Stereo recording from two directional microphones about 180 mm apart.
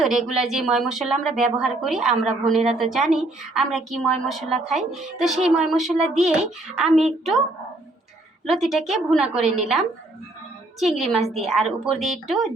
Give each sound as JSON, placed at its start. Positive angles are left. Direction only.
{"t": 0.0, "sound": "a woman's voice", "side_deg": 0}
{"t": 8.4, "sound": "a woman's voice", "side_deg": 0}